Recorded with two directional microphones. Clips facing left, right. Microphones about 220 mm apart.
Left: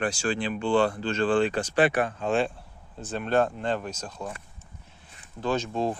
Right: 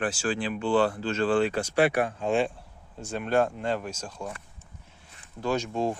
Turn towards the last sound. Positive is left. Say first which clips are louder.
# even
turn(degrees=-15)  # may be behind; listen again after turning